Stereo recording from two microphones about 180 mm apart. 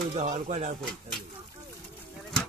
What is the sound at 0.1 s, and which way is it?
Speech, 40° right (ahead or behind).